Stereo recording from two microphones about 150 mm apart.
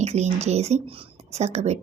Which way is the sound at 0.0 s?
45° right (ahead or behind).